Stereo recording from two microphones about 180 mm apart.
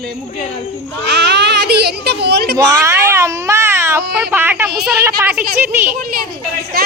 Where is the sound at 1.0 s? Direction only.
70° right (ahead or behind).